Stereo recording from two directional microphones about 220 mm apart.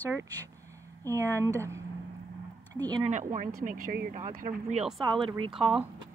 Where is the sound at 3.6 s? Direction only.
40° right (ahead or behind).